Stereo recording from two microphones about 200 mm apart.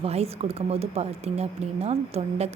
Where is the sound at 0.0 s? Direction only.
30° right (ahead or behind).